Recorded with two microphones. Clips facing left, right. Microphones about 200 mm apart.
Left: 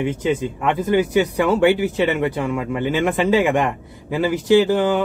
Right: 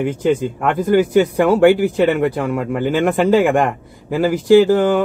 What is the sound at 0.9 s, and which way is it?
A man's voice, 50° right (ahead or behind).